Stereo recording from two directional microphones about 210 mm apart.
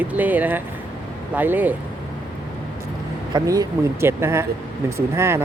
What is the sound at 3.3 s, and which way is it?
Speech, 15° right (ahead or behind).